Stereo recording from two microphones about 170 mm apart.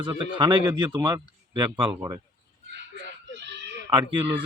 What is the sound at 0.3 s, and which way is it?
A man's voice, 25° right (ahead or behind).